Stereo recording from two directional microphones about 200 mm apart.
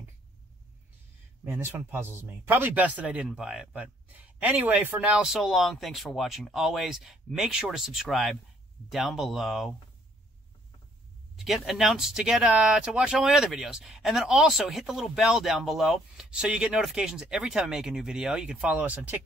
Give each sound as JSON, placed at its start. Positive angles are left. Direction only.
{"t": 1.4, "sound": "speech", "side_deg": -10}
{"t": 11.3, "sound": "speech", "side_deg": 0}